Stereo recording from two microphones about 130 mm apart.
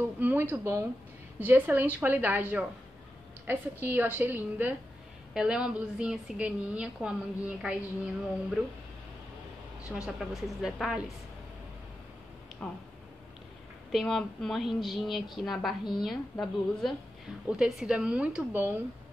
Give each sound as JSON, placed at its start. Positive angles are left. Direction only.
{"t": 0.2, "sound": "a woman's voice", "side_deg": -15}
{"t": 9.9, "sound": "speech", "side_deg": -5}
{"t": 12.6, "sound": "speech", "side_deg": 5}
{"t": 13.9, "sound": "a woman's voice", "side_deg": 0}